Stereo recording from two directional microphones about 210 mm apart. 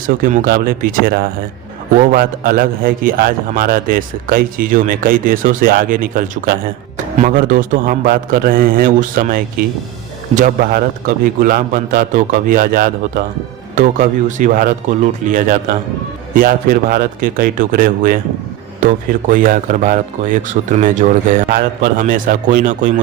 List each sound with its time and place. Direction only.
0.1 s a man's voice: 40° right (ahead or behind)